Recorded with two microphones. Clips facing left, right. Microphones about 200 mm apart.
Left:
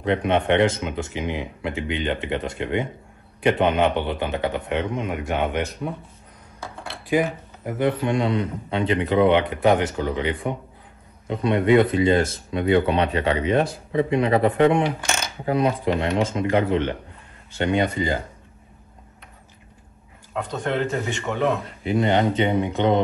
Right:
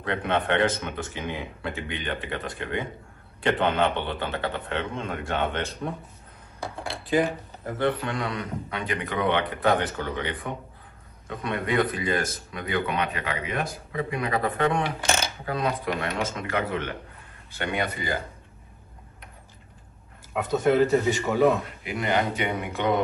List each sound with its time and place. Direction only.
0.0 s a man's voice: 20° left (ahead or behind)
7.1 s speech: 15° left (ahead or behind)
20.3 s a man's voice: 5° right (ahead or behind)
21.8 s speech: 25° left (ahead or behind)